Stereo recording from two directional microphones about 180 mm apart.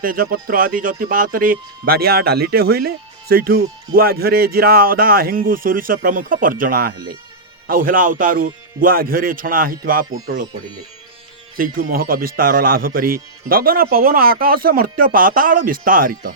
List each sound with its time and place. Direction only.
0.0 s speech: 55° right (ahead or behind)
6.9 s speech: 25° right (ahead or behind)
7.7 s speech: 50° right (ahead or behind)
11.5 s speech: 55° right (ahead or behind)